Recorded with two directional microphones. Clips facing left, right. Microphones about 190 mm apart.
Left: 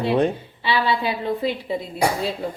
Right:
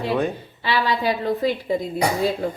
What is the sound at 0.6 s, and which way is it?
Speech, 40° right (ahead or behind).